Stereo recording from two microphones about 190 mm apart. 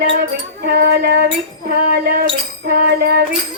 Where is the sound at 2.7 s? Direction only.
55° right (ahead or behind).